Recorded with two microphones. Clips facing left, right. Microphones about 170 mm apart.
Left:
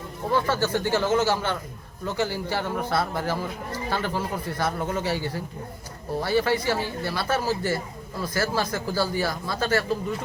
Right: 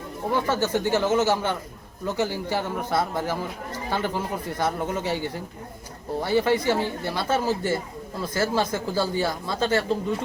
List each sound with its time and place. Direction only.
0.3 s speech: 15° right (ahead or behind)